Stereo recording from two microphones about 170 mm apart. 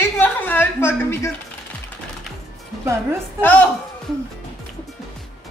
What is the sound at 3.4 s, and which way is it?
Speech, 10° left (ahead or behind).